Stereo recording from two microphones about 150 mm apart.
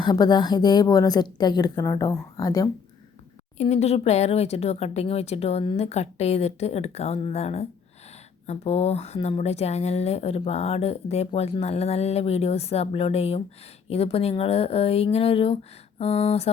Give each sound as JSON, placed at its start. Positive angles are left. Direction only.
{"t": 0.0, "sound": "a woman's voice", "side_deg": 25}
{"t": 3.6, "sound": "speech", "side_deg": 50}